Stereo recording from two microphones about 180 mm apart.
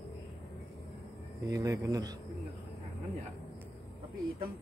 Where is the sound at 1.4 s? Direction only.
20° right (ahead or behind).